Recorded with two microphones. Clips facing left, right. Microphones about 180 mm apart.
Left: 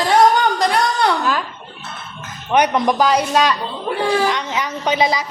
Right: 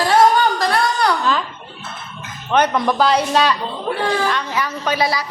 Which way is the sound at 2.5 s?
15° left (ahead or behind).